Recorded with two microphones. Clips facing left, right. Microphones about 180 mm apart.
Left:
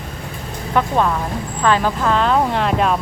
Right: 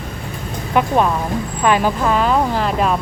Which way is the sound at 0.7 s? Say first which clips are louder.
Right 2 dB; 15° right (ahead or behind).